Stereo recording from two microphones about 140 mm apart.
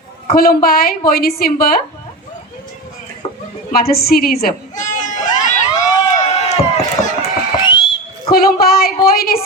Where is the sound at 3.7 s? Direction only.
90° left; by 5.9 s 60° left (ahead or behind).